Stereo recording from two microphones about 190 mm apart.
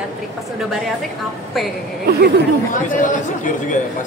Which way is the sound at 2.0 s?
60° right (ahead or behind).